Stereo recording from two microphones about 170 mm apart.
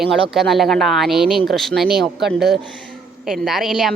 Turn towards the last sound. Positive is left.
turn(degrees=0)  # may be behind; listen again after turning